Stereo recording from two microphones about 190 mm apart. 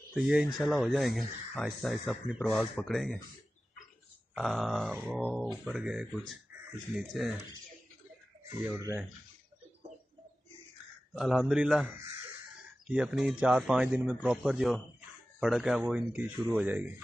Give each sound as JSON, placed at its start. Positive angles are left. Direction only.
{"t": 0.1, "sound": "speech", "side_deg": -5}
{"t": 4.4, "sound": "speech", "side_deg": 0}
{"t": 8.7, "sound": "speech", "side_deg": -15}
{"t": 11.1, "sound": "speech", "side_deg": 0}